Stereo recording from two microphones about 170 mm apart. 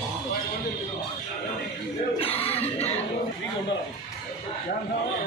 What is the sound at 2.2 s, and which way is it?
Cough, 35° left (ahead or behind).